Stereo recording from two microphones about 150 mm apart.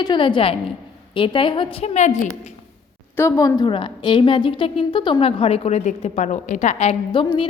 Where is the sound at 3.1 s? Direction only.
20° left (ahead or behind); by 6.9 s 50° left (ahead or behind).